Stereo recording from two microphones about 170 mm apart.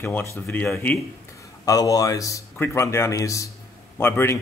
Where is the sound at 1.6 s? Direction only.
20° left (ahead or behind).